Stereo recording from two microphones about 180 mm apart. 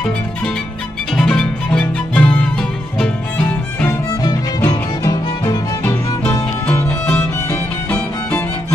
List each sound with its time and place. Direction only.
1.1 s music: 5° left (ahead or behind)
4.2 s music: 20° left (ahead or behind)
6.2 s music: 10° left (ahead or behind)